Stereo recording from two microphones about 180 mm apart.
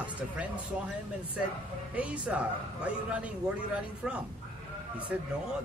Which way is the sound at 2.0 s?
5° right (ahead or behind).